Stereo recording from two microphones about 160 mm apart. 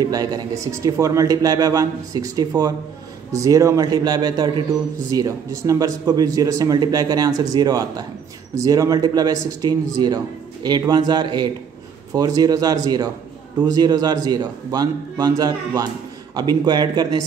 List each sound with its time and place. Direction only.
0.0 s speech: 25° right (ahead or behind)